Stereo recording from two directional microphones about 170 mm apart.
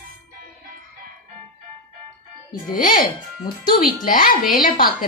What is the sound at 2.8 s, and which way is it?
A woman's voice, 55° left (ahead or behind).